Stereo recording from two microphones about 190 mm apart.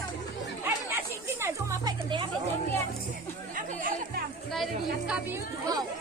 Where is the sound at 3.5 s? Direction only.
45° right (ahead or behind).